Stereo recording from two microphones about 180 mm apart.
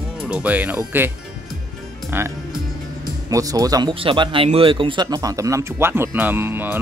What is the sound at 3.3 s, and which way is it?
Speech, 20° right (ahead or behind).